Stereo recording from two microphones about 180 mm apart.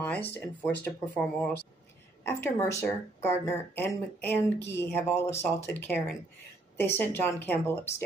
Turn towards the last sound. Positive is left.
turn(degrees=15)  # may be behind; listen again after turning